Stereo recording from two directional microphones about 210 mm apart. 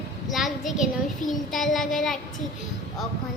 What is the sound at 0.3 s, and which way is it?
A woman's voice, centre (ahead or behind).